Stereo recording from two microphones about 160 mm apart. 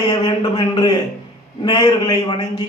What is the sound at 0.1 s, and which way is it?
Speech, 25° left (ahead or behind).